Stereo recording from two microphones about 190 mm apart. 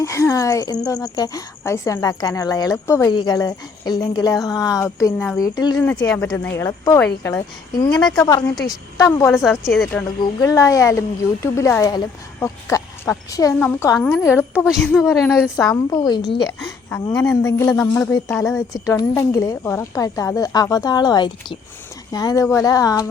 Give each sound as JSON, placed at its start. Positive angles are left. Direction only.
{"t": 0.0, "sound": "speech", "side_deg": 15}
{"t": 9.3, "sound": "a woman's voice", "side_deg": 0}
{"t": 10.2, "sound": "speech", "side_deg": 15}
{"t": 15.1, "sound": "a woman's voice", "side_deg": 0}
{"t": 15.5, "sound": "speech", "side_deg": 15}